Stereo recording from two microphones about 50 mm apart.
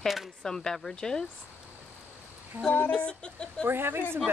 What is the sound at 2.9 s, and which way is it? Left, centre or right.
Speech, centre.